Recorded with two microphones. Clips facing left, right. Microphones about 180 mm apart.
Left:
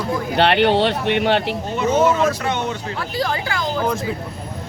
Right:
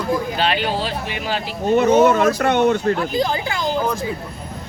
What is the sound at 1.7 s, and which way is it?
Speech, 60° right (ahead or behind).